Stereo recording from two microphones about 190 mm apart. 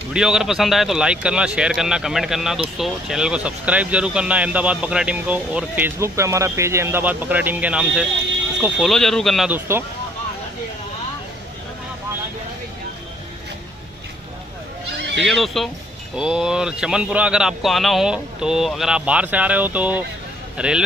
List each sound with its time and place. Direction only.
0.1 s speech: 5° right (ahead or behind)
15.0 s neigh: 65° right (ahead or behind)
15.2 s speech: centre (ahead or behind)